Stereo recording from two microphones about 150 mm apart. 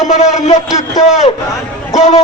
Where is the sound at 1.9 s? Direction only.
50° left (ahead or behind).